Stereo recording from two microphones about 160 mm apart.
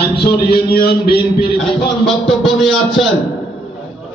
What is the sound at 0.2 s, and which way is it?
A man's voice, 75° left (ahead or behind).